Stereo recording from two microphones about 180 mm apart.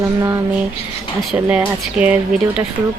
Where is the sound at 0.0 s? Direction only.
15° right (ahead or behind).